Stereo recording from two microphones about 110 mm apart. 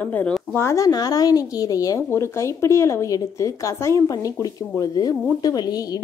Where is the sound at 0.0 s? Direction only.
15° left (ahead or behind).